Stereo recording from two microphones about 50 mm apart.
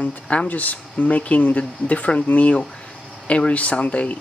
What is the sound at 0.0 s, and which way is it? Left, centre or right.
Speech, left.